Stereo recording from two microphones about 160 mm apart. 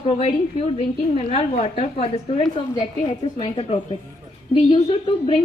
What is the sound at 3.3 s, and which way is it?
Speech, 35° left (ahead or behind).